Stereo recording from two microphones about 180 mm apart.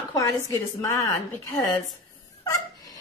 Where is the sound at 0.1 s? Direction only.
20° left (ahead or behind).